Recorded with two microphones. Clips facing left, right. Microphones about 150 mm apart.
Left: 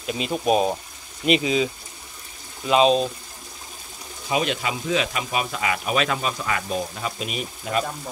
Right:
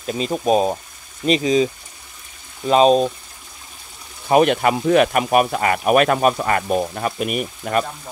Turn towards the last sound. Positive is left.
turn(degrees=-55)  # may be behind; listen again after turning